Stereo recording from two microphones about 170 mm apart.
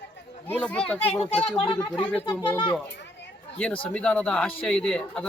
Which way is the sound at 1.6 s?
30° left (ahead or behind).